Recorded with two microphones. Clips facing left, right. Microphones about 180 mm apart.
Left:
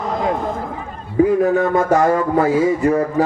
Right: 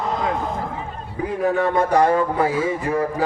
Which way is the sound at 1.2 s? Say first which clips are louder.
Left 7 dB; 45° left (ahead or behind).